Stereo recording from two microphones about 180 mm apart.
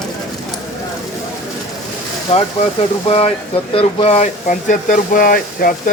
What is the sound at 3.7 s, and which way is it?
A man's voice, 35° left (ahead or behind).